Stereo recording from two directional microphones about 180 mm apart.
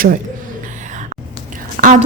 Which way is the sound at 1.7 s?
50° right (ahead or behind).